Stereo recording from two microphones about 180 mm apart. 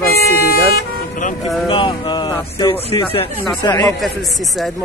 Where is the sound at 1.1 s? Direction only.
45° left (ahead or behind).